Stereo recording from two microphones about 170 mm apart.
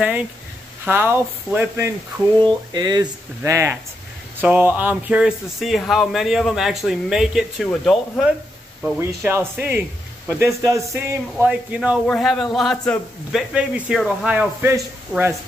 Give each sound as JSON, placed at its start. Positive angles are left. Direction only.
{"t": 0.8, "sound": "speech", "side_deg": -10}
{"t": 2.4, "sound": "speech", "side_deg": -25}
{"t": 9.2, "sound": "speech", "side_deg": -15}